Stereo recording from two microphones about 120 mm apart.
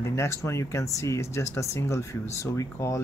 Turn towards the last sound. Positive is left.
turn(degrees=25)  # may be behind; listen again after turning